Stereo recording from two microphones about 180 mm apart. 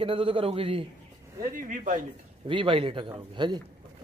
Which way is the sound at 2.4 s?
30° right (ahead or behind).